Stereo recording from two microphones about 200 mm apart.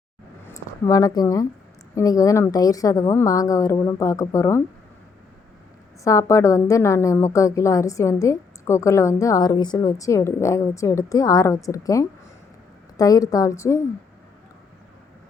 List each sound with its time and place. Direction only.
0.4 s a woman's voice: 15° left (ahead or behind)
6.1 s a woman's voice: 15° left (ahead or behind)